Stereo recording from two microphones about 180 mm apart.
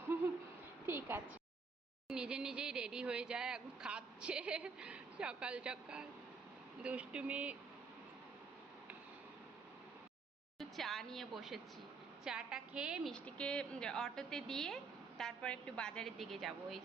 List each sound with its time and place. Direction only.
0.9 s a sound: 15° right (ahead or behind)
2.0 s speech: 5° right (ahead or behind)
10.6 s speech: centre (ahead or behind)
13.1 s speech: 5° left (ahead or behind)